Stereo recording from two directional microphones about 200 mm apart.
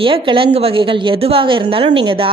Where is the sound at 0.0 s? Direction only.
25° right (ahead or behind).